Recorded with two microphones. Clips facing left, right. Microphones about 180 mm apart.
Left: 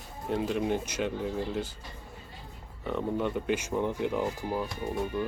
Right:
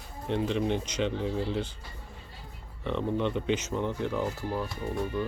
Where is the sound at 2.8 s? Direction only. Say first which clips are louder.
Right 1 dB; 5° left (ahead or behind).